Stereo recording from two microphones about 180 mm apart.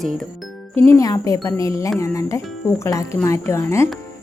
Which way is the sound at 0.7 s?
15° left (ahead or behind).